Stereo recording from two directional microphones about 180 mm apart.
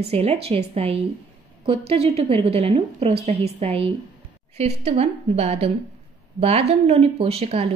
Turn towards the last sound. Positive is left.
turn(degrees=-35)  # may be behind; listen again after turning